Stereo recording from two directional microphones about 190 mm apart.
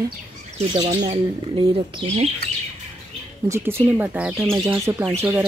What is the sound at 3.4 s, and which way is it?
Speech, 15° right (ahead or behind).